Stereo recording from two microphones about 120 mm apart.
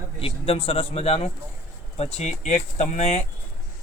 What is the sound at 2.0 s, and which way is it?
Speech, 70° left (ahead or behind).